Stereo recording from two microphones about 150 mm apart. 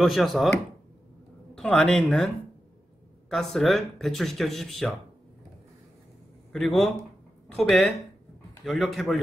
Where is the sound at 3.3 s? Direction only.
Centre (ahead or behind).